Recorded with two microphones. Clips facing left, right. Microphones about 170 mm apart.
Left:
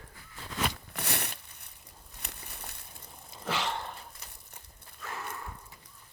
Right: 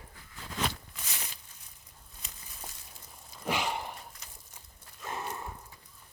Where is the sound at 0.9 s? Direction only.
65° left (ahead or behind).